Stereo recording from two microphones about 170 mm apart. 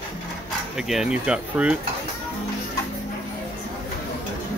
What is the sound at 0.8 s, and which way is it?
Speech, 5° right (ahead or behind).